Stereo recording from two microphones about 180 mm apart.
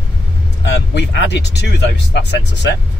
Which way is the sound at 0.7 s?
75° left (ahead or behind).